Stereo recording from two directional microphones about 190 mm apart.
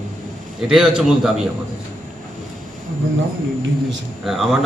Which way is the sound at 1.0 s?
5° right (ahead or behind).